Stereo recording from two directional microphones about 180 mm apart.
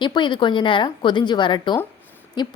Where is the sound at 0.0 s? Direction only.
25° left (ahead or behind).